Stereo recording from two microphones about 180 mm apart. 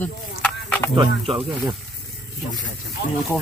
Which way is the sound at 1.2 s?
35° right (ahead or behind).